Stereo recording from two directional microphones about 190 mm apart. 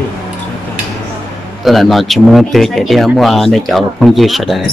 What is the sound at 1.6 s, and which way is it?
Speech, centre (ahead or behind).